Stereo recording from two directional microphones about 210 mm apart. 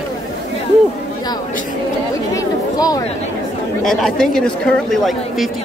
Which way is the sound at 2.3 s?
15° left (ahead or behind).